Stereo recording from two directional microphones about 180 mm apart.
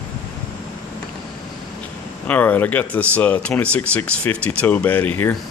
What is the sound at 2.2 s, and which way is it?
Speech, 10° left (ahead or behind).